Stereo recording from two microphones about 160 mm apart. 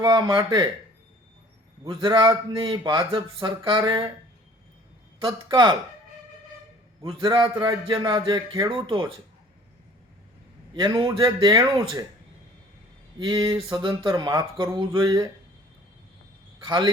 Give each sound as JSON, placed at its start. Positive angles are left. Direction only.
{"t": 0.0, "sound": "a man's voice", "side_deg": -25}
{"t": 1.8, "sound": "a man's voice", "side_deg": -30}
{"t": 5.2, "sound": "a man's voice", "side_deg": -30}
{"t": 7.1, "sound": "a man's voice", "side_deg": -30}
{"t": 10.8, "sound": "a man's voice", "side_deg": -30}
{"t": 13.1, "sound": "a man's voice", "side_deg": -30}
{"t": 16.6, "sound": "a man's voice", "side_deg": -30}